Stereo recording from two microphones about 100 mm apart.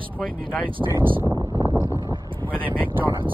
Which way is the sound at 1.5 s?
35° right (ahead or behind).